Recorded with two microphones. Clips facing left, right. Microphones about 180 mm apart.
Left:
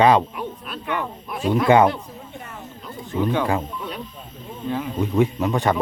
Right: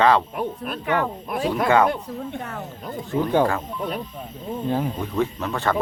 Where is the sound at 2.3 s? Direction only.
65° right (ahead or behind).